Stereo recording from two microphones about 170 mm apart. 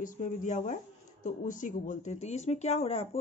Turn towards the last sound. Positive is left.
turn(degrees=35)  # may be behind; listen again after turning